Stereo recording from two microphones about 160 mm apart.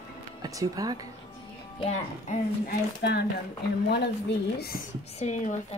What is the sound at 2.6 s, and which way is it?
Speech, 75° left (ahead or behind).